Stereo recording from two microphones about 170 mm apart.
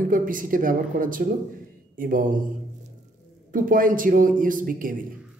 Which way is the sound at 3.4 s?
55° right (ahead or behind).